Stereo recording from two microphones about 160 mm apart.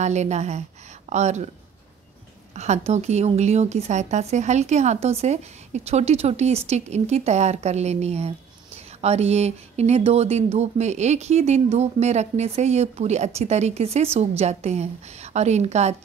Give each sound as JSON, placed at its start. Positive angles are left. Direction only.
{"t": 0.0, "sound": "speech", "side_deg": -45}
{"t": 2.5, "sound": "speech", "side_deg": -45}